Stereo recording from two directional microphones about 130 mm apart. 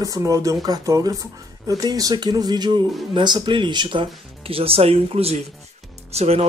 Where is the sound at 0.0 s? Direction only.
25° right (ahead or behind).